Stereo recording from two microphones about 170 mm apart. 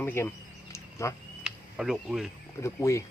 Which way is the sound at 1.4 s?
5° right (ahead or behind).